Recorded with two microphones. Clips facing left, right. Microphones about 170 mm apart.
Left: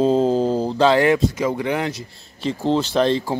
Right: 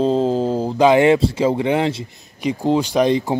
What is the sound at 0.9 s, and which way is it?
Speech, 25° right (ahead or behind).